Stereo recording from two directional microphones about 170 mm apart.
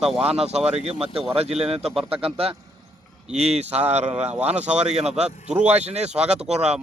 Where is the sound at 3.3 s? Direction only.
40° right (ahead or behind).